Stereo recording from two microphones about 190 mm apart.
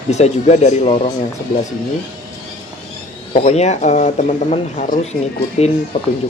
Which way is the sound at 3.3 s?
35° left (ahead or behind).